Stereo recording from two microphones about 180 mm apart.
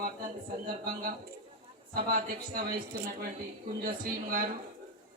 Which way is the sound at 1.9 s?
55° right (ahead or behind).